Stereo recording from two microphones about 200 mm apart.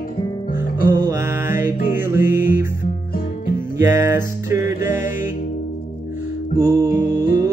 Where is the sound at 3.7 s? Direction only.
15° right (ahead or behind).